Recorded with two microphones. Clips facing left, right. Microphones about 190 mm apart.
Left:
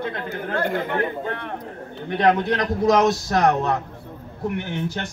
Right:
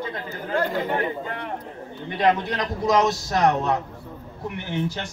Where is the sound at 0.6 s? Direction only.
55° left (ahead or behind).